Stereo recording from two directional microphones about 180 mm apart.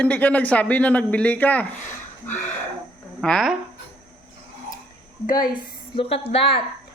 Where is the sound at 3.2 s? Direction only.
Centre (ahead or behind).